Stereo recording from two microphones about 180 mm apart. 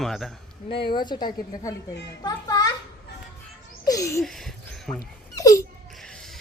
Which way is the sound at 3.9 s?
20° left (ahead or behind).